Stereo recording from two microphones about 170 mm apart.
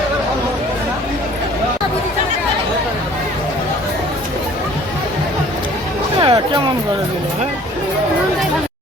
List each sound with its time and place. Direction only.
6.1 s music: 25° right (ahead or behind)